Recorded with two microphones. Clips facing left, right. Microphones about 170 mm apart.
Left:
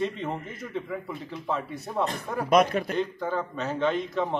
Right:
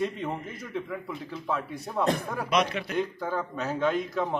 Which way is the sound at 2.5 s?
45° left (ahead or behind).